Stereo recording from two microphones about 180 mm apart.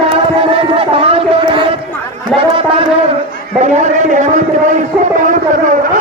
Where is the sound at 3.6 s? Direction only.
40° right (ahead or behind).